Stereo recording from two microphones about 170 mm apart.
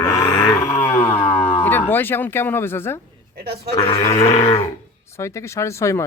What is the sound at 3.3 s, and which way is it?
Speech, 65° right (ahead or behind).